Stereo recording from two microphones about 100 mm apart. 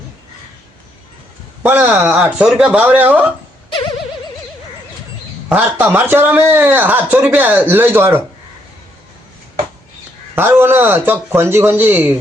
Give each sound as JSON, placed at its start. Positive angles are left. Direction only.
{"t": 1.6, "sound": "speech", "side_deg": -15}
{"t": 5.5, "sound": "speech", "side_deg": -15}
{"t": 10.3, "sound": "speech", "side_deg": -20}